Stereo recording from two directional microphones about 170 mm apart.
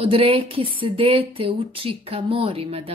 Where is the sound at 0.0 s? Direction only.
30° right (ahead or behind).